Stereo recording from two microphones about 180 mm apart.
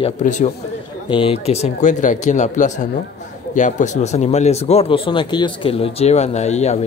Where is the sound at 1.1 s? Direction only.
30° left (ahead or behind).